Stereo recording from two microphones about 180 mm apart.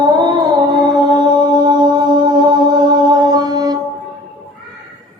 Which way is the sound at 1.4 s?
25° right (ahead or behind).